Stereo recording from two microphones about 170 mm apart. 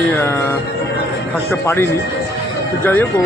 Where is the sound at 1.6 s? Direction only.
15° left (ahead or behind).